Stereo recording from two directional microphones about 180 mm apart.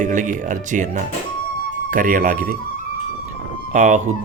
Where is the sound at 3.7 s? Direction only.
40° right (ahead or behind).